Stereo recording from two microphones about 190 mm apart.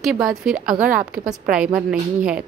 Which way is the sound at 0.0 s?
5° right (ahead or behind).